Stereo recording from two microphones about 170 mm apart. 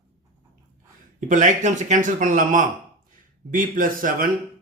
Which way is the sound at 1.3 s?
50° right (ahead or behind).